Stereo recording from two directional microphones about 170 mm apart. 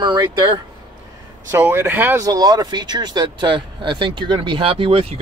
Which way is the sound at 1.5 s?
15° right (ahead or behind).